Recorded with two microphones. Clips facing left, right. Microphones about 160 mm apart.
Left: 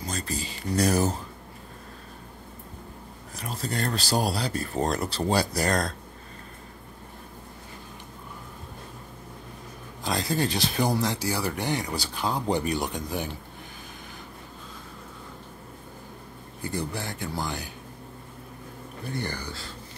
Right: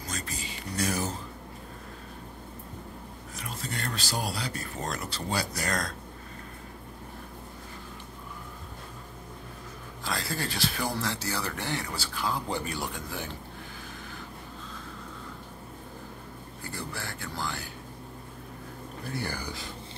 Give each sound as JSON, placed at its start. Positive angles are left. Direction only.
{"t": 0.1, "sound": "a sound", "side_deg": 35}
{"t": 3.3, "sound": "speech", "side_deg": 35}
{"t": 10.0, "sound": "speech", "side_deg": 20}
{"t": 16.7, "sound": "speech", "side_deg": 20}
{"t": 19.0, "sound": "speech", "side_deg": -5}